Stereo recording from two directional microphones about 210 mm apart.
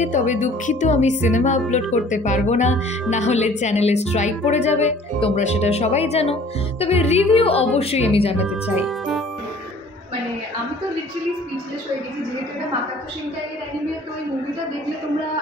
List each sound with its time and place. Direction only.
0.0 s a woman's voice: 35° left (ahead or behind)
8.8 s speech: centre (ahead or behind)